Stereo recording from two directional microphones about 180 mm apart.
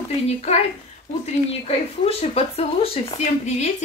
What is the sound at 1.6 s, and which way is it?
Speech, 35° left (ahead or behind).